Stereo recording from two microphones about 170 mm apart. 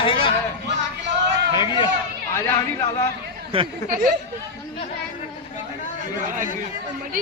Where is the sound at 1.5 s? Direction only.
25° left (ahead or behind).